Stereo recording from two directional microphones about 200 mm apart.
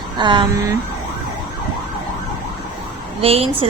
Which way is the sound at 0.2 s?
20° right (ahead or behind).